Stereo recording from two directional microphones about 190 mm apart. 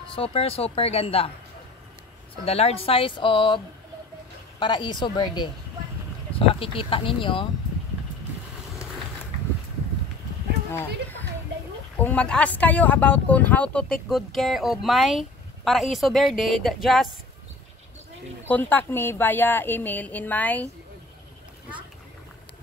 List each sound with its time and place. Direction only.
0.1 s speech: 30° left (ahead or behind)
2.4 s speech: 30° left (ahead or behind)
6.5 s speech: 30° left (ahead or behind)
10.7 s a woman's voice: 10° left (ahead or behind)
18.5 s a woman's voice: 10° left (ahead or behind)